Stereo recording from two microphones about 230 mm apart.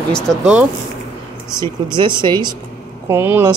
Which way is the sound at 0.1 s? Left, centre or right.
Centre.